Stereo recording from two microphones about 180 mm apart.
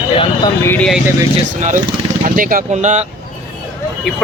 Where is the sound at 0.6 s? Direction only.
10° left (ahead or behind).